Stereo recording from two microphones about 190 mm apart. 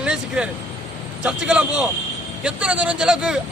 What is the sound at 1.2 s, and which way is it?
A man's voice, 5° right (ahead or behind).